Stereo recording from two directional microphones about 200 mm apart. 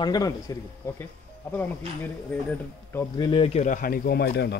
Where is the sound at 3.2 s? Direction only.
25° left (ahead or behind); by 4.6 s 55° left (ahead or behind).